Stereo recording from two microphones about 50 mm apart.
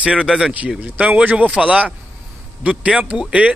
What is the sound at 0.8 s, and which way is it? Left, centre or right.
Speech, right.